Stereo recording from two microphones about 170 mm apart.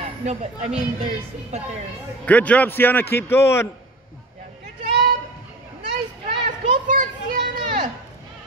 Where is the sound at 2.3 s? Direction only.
10° left (ahead or behind).